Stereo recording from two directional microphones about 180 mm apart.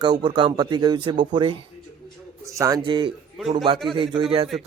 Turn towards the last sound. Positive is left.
turn(degrees=-30)  # may be behind; listen again after turning